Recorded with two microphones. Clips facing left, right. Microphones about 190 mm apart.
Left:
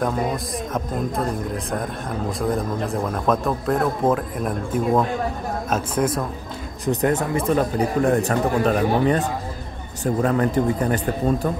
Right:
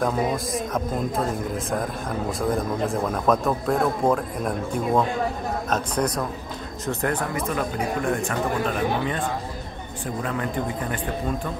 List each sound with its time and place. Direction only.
0.0 s a man's voice: centre (ahead or behind)
6.9 s speech: 20° left (ahead or behind)
7.3 s speech: 30° left (ahead or behind)
10.2 s speech: 40° left (ahead or behind)